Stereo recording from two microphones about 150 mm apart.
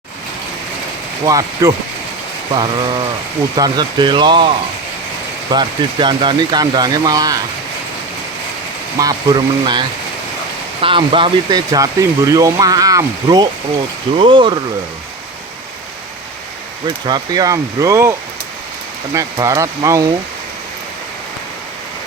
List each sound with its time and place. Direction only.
1.2 s speech: 25° right (ahead or behind)
9.0 s speech: 25° right (ahead or behind)
16.8 s speech: 25° right (ahead or behind)
19.1 s speech: 20° right (ahead or behind)